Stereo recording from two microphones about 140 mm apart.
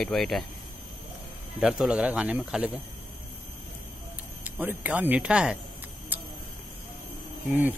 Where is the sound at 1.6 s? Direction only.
5° right (ahead or behind).